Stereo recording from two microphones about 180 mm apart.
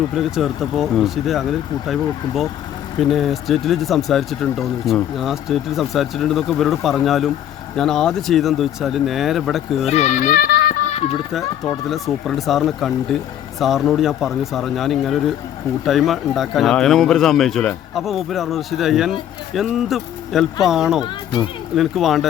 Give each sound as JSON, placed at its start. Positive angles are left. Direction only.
{"t": 0.2, "sound": "speech", "side_deg": 0}
{"t": 9.9, "sound": "speech", "side_deg": 40}
{"t": 11.3, "sound": "speech", "side_deg": 0}